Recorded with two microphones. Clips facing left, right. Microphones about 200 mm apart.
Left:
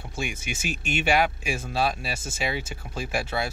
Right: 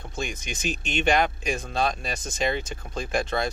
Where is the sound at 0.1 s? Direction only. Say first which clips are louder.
Even; 10° left (ahead or behind).